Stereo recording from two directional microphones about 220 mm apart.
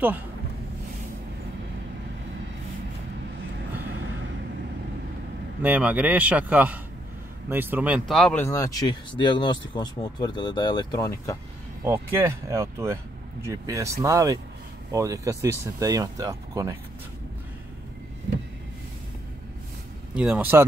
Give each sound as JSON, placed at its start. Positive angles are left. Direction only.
{"t": 5.6, "sound": "speech", "side_deg": -5}
{"t": 11.8, "sound": "speech", "side_deg": -10}
{"t": 20.2, "sound": "speech", "side_deg": -5}